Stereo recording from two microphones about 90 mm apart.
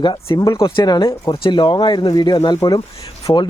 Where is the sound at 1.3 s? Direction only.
65° left (ahead or behind).